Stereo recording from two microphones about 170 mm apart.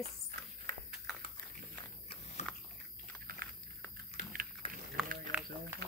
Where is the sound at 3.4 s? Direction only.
60° right (ahead or behind).